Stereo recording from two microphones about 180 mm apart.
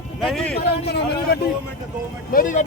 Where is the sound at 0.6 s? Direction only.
65° left (ahead or behind).